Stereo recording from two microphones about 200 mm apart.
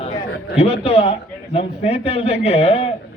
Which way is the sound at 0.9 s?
30° left (ahead or behind).